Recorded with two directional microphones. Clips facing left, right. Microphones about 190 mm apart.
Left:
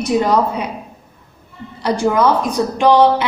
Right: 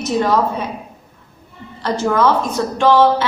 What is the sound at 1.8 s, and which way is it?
A woman's voice, 15° left (ahead or behind).